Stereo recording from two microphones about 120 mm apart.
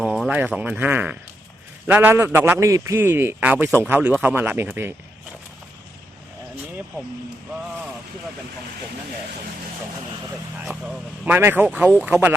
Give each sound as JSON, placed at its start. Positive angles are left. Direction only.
{"t": 0.0, "sound": "a man's voice", "side_deg": -5}
{"t": 11.3, "sound": "speech", "side_deg": -20}